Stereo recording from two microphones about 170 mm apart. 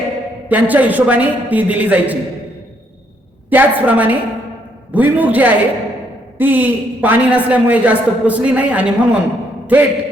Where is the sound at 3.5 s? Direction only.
10° right (ahead or behind).